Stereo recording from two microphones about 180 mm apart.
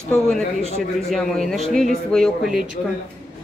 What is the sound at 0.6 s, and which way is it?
Speech, 35° left (ahead or behind).